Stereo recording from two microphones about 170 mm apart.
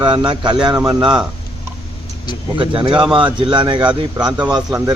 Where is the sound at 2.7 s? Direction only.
30° right (ahead or behind).